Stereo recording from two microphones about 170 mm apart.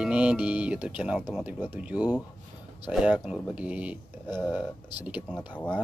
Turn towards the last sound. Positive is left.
turn(degrees=5)  # may be behind; listen again after turning